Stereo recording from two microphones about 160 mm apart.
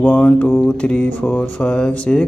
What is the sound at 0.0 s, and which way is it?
A man's voice, 10° left (ahead or behind).